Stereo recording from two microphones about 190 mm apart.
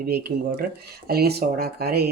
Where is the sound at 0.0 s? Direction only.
55° right (ahead or behind).